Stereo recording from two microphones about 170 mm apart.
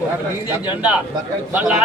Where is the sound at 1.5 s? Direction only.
10° right (ahead or behind).